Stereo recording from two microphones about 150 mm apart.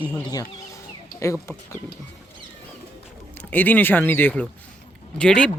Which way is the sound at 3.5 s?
10° left (ahead or behind).